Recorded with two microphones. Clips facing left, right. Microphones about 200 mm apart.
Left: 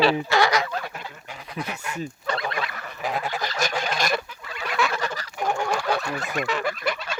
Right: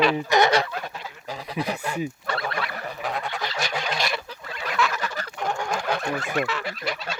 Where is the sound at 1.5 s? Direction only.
35° right (ahead or behind).